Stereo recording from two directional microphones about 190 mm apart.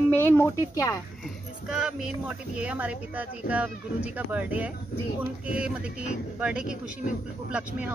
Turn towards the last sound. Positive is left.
turn(degrees=-5)  # may be behind; listen again after turning